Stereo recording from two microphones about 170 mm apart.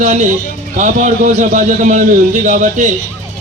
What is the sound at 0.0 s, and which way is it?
A man's voice, 45° right (ahead or behind).